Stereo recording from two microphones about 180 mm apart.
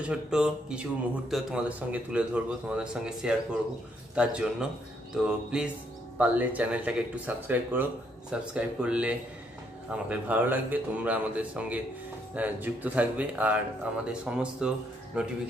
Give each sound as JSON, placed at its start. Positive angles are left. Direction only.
{"t": 0.0, "sound": "speech", "side_deg": -5}